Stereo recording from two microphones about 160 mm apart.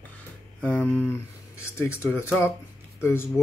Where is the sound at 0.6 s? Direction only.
5° left (ahead or behind).